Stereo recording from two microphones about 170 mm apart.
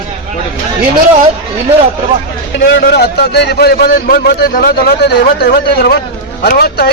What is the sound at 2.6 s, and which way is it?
A man's voice, 90° left.